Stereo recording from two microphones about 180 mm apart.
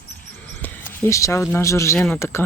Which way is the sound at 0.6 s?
10° left (ahead or behind).